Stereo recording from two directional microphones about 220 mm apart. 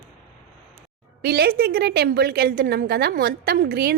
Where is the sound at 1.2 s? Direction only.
45° right (ahead or behind).